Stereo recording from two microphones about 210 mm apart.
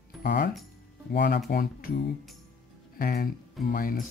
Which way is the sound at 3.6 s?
40° left (ahead or behind).